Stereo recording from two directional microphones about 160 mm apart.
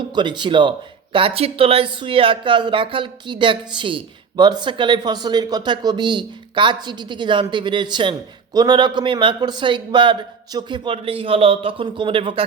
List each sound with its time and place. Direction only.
0.1 s a man's voice: 30° right (ahead or behind)